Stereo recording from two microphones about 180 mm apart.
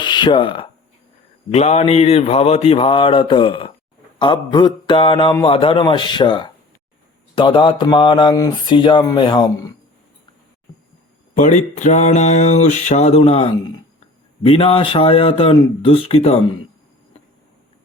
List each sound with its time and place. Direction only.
0.0 s speech: 25° left (ahead or behind)
4.2 s a sound: 25° left (ahead or behind)
11.3 s speech: 40° left (ahead or behind)